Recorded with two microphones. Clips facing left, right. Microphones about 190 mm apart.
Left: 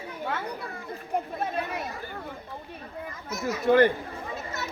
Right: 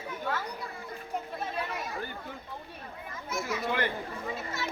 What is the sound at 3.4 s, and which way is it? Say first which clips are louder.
Speech: left 12 dB; 45° left (ahead or behind).